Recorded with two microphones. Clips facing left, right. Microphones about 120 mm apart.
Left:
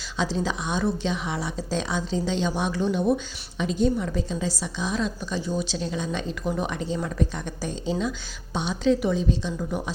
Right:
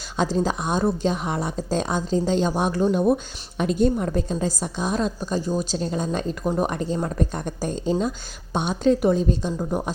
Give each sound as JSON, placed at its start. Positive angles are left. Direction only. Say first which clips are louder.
{"t": 0.2, "sound": "a woman's voice", "louder": "right 4 dB", "side_deg": -45}